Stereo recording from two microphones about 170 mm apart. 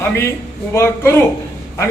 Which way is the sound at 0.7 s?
15° left (ahead or behind).